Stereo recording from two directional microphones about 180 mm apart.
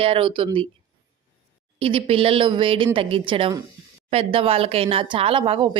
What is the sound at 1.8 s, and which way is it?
Speech, 30° right (ahead or behind).